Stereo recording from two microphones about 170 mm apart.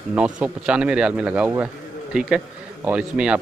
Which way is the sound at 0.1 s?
5° right (ahead or behind).